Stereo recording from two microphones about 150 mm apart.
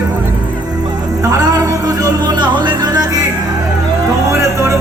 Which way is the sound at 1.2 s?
25° right (ahead or behind).